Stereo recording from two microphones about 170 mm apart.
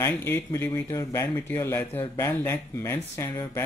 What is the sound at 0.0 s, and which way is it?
Speech, 15° left (ahead or behind).